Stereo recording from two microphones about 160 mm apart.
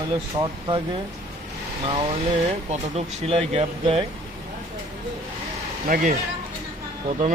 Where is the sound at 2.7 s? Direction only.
40° right (ahead or behind).